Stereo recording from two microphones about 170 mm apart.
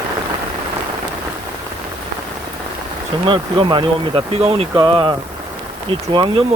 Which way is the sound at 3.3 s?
30° right (ahead or behind).